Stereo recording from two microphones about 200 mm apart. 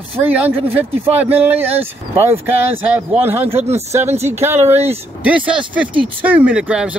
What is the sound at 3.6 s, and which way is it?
Speech, 30° right (ahead or behind).